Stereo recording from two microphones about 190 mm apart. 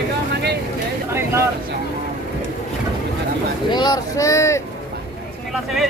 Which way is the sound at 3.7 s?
20° left (ahead or behind).